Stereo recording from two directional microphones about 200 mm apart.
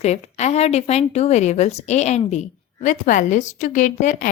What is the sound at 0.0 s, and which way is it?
Speech, 35° left (ahead or behind).